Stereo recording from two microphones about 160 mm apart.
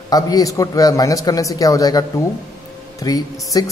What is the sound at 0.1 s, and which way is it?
A man's voice, 25° left (ahead or behind).